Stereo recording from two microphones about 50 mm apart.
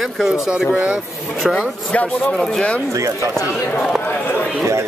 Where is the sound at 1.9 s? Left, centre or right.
Left.